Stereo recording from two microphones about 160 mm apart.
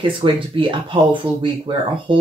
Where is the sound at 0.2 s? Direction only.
30° right (ahead or behind).